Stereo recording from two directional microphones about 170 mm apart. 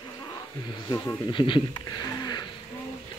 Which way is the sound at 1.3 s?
30° left (ahead or behind).